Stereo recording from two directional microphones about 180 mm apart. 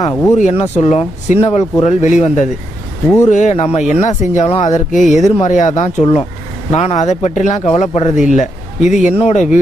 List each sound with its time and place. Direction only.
0.0 s speech: 20° left (ahead or behind)
0.3 s speech: 35° left (ahead or behind)
6.0 s a man's voice: 30° left (ahead or behind)